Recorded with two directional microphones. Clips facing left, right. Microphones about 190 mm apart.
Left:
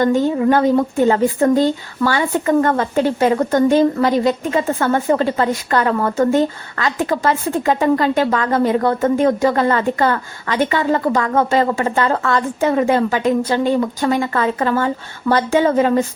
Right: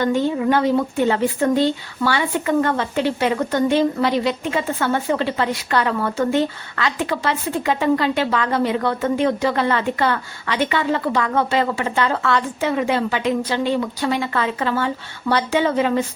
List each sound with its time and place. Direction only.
0.0 s speech: 45° left (ahead or behind)